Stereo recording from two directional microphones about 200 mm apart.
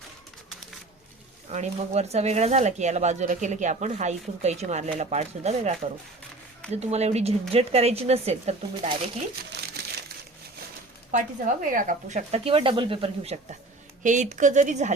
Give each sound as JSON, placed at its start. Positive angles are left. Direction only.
{"t": 1.5, "sound": "speech", "side_deg": -35}
{"t": 6.7, "sound": "speech", "side_deg": -35}
{"t": 9.5, "sound": "crumpling", "side_deg": -60}
{"t": 11.1, "sound": "speech", "side_deg": -40}